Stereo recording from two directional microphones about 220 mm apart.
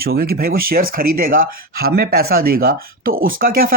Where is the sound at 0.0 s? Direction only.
45° right (ahead or behind).